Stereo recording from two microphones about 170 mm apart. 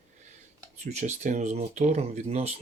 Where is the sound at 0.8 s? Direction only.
40° right (ahead or behind).